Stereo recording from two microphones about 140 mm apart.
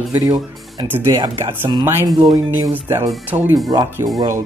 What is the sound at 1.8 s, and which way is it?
Speech, 15° right (ahead or behind).